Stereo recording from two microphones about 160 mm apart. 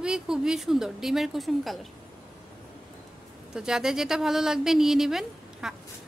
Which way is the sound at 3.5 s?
5° right (ahead or behind).